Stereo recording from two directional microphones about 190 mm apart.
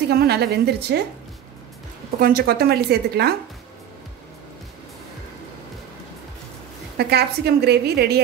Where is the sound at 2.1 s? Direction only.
50° right (ahead or behind).